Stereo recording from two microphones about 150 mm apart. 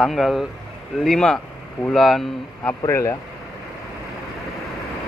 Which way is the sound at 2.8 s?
20° left (ahead or behind).